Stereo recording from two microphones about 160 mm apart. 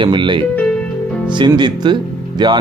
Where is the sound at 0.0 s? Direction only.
30° right (ahead or behind).